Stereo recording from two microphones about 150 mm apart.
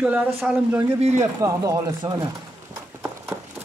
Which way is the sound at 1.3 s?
20° right (ahead or behind).